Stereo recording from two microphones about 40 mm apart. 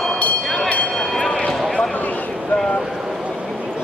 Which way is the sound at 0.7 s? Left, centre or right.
Left.